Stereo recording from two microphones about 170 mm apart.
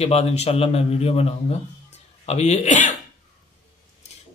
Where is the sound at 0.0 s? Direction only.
35° left (ahead or behind).